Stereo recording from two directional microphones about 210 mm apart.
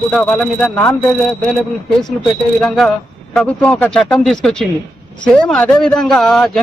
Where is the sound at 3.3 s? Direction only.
5° left (ahead or behind).